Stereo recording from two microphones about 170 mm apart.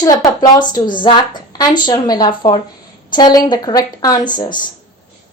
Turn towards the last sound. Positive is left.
turn(degrees=25)  # may be behind; listen again after turning